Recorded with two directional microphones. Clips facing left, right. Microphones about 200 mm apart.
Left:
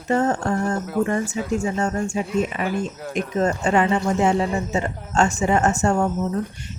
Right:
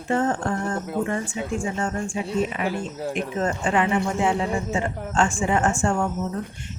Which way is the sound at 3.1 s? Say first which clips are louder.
Left 5 dB; 40° left (ahead or behind).